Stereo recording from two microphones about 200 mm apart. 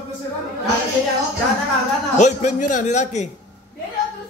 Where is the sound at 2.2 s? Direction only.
35° left (ahead or behind).